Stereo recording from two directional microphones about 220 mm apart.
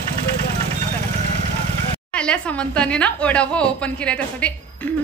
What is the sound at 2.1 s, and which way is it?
Speech, 5° left (ahead or behind).